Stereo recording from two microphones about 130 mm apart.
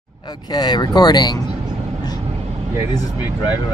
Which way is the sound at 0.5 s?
30° left (ahead or behind).